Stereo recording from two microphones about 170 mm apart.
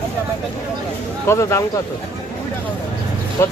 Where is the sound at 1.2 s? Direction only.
15° left (ahead or behind).